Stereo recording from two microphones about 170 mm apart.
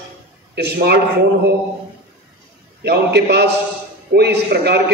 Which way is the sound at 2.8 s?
75° right (ahead or behind).